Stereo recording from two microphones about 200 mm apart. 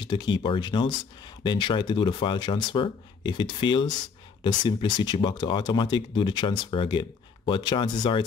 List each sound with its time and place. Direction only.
0.0 s speech: 20° left (ahead or behind)